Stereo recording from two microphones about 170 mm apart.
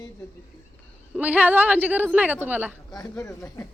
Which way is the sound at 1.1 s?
10° right (ahead or behind).